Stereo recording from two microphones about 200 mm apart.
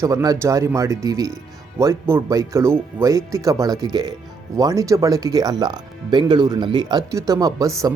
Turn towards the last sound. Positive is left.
turn(degrees=-20)  # may be behind; listen again after turning